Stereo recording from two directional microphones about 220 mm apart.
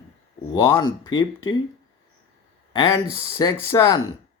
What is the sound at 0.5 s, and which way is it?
Speech, 15° left (ahead or behind).